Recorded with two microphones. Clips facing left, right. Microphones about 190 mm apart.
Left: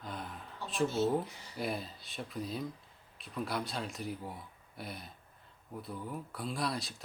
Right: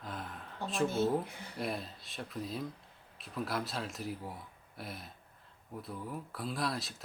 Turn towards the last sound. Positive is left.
turn(degrees=0)  # may be behind; listen again after turning